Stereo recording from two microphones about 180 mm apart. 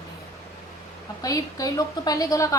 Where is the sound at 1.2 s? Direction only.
20° left (ahead or behind).